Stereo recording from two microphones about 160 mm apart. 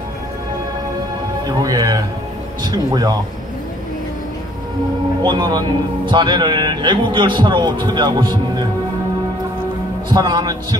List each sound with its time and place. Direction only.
1.6 s a man's voice: 20° right (ahead or behind)
5.2 s a man's voice: 30° right (ahead or behind)
10.0 s a man's voice: 25° right (ahead or behind)